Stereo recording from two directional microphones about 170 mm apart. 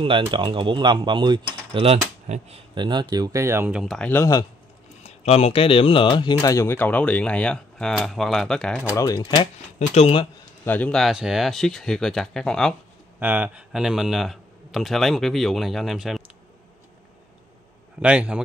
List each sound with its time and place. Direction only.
0.0 s speech: 30° right (ahead or behind); by 3.8 s 15° right (ahead or behind)
3.8 s speech: centre (ahead or behind)
4.1 s speech: 20° left (ahead or behind)
5.0 s speech: 40° left (ahead or behind); by 8.8 s 5° left (ahead or behind)
8.9 s speech: 20° left (ahead or behind); by 10.2 s 35° left (ahead or behind)
10.6 s speech: 10° left (ahead or behind)
13.2 s speech: 10° right (ahead or behind)
18.0 s speech: 5° right (ahead or behind)